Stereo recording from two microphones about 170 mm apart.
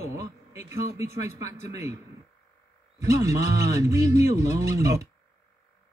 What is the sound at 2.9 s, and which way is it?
Speech, 20° right (ahead or behind).